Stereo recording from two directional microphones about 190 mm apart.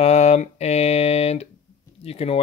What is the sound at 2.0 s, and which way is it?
Speech, 30° left (ahead or behind).